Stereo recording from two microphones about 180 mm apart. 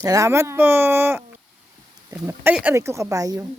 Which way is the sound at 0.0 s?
15° right (ahead or behind).